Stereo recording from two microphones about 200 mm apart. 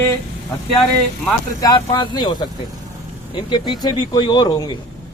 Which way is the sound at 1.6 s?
20° left (ahead or behind).